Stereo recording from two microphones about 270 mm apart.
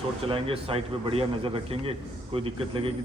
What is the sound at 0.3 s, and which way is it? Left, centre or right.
A man's voice, right.